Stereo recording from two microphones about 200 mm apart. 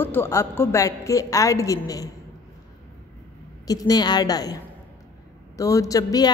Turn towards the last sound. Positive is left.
turn(degrees=20)  # may be behind; listen again after turning